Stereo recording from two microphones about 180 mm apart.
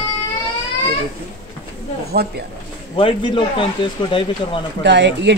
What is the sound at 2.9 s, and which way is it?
Speech, 25° left (ahead or behind).